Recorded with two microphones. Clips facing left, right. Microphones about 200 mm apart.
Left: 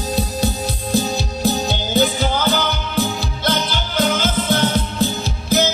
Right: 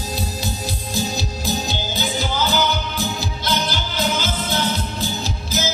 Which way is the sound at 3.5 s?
55° left (ahead or behind).